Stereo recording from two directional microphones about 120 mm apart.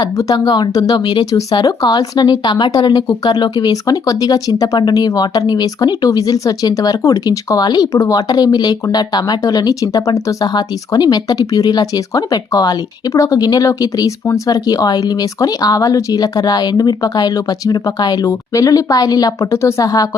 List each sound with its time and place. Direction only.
0.0 s speech: 30° left (ahead or behind)